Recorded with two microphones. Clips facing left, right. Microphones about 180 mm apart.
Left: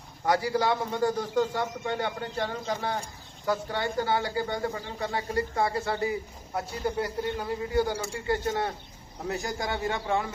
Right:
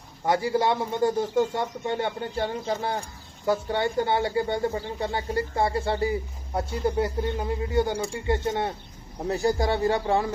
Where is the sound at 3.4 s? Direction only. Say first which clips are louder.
Right 4 dB; 25° right (ahead or behind).